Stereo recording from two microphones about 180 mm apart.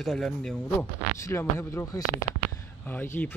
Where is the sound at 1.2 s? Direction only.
15° left (ahead or behind).